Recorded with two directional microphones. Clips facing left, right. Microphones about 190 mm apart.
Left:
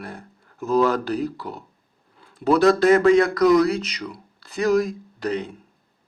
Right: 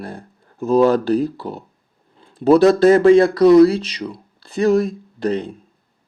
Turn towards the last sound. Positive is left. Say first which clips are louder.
# right 5 dB
turn(degrees=-30)  # may be behind; listen again after turning